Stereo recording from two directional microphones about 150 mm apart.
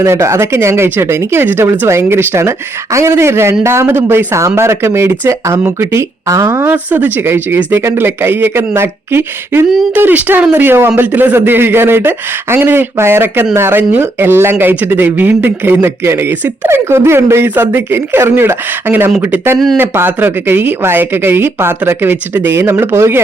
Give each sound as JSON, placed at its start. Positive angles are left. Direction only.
{"t": 0.0, "sound": "speech", "side_deg": -20}